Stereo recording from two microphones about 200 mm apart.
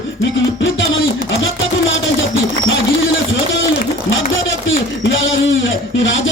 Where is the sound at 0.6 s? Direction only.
70° left (ahead or behind).